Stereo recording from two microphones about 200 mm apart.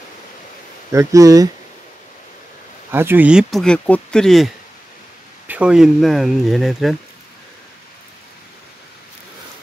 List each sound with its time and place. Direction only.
0.9 s speech: 15° right (ahead or behind)
2.9 s speech: 10° right (ahead or behind)
5.5 s speech: 5° right (ahead or behind)